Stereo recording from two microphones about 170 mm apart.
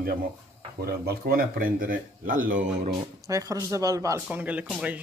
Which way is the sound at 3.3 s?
20° right (ahead or behind).